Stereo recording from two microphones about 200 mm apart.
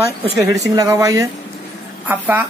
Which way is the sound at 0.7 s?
15° right (ahead or behind).